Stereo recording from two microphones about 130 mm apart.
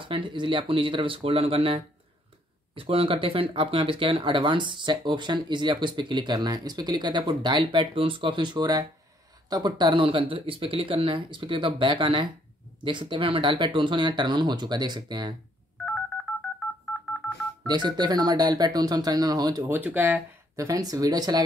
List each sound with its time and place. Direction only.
0.0 s speech: 40° right (ahead or behind)
15.8 s telephone dialing: 5° left (ahead or behind)
17.6 s speech: 35° right (ahead or behind)
19.7 s speech: 15° right (ahead or behind)
20.5 s speech: 25° right (ahead or behind)